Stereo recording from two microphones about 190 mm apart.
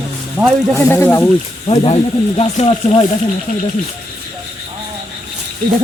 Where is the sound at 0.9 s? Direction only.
10° left (ahead or behind).